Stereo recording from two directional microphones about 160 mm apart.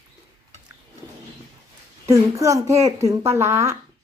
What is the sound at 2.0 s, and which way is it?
Speech, 20° right (ahead or behind).